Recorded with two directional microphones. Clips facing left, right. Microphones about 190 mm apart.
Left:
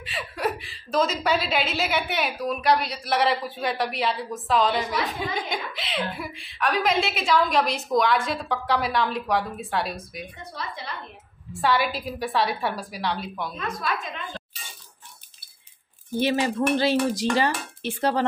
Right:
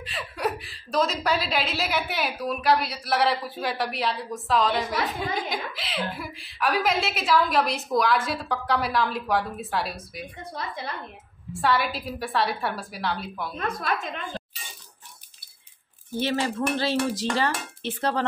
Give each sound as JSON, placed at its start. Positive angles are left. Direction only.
{"t": 0.0, "sound": "a woman's voice", "side_deg": 0}
{"t": 11.5, "sound": "a woman's voice", "side_deg": 0}
{"t": 13.6, "sound": "a woman's voice", "side_deg": -55}
{"t": 16.2, "sound": "dishes", "side_deg": 15}